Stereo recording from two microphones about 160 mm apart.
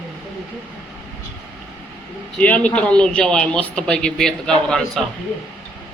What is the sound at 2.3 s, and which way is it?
Speech, 10° left (ahead or behind).